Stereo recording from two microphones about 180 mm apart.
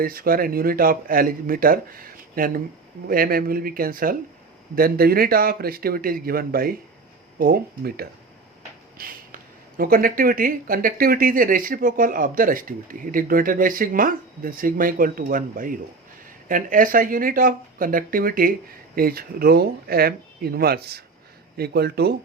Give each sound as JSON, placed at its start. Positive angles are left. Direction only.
{"t": 0.0, "sound": "speech", "side_deg": -55}